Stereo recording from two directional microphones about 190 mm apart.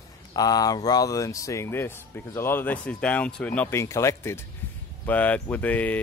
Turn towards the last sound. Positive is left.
turn(degrees=10)  # may be behind; listen again after turning